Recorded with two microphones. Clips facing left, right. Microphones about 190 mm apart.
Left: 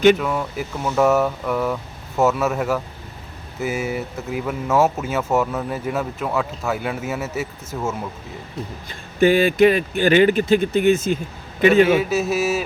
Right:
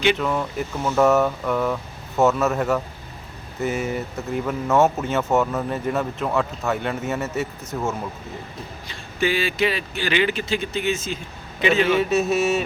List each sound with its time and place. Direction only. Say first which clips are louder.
0.2 s speech: even; 5° left (ahead or behind)
9.2 s speech: left 8 dB; 50° left (ahead or behind)
11.9 s speech: even; 5° left (ahead or behind)